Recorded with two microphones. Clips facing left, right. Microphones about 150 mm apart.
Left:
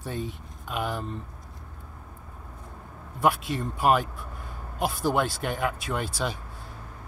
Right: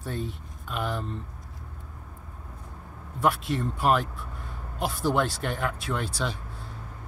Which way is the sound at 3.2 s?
5° left (ahead or behind).